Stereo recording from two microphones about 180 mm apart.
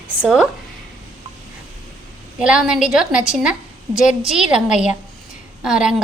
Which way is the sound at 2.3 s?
5° right (ahead or behind).